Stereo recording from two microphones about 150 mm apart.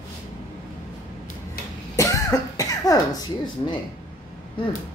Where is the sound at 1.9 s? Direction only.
20° left (ahead or behind).